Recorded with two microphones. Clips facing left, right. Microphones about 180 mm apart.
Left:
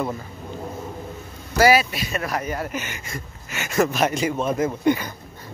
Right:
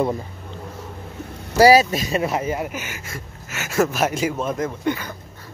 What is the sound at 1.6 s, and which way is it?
Speech, 40° right (ahead or behind).